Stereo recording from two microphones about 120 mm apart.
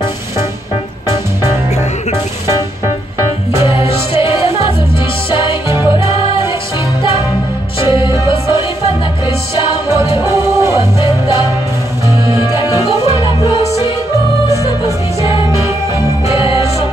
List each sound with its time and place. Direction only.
4.1 s music: 50° left (ahead or behind)
5.7 s music: 20° right (ahead or behind)
8.5 s music: 55° left (ahead or behind)
9.8 s music: 25° right (ahead or behind)
12.4 s music: 30° left (ahead or behind)
16.3 s music: 50° left (ahead or behind)